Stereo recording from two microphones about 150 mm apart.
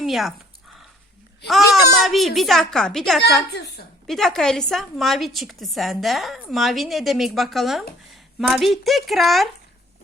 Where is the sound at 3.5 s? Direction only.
90° left.